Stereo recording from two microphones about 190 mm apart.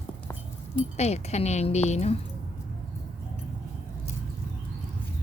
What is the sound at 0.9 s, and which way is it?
A woman's voice, 35° left (ahead or behind).